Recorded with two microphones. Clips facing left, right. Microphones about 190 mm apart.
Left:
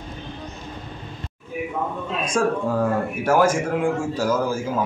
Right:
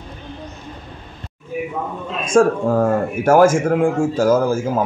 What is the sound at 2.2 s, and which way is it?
A man's voice, 45° right (ahead or behind).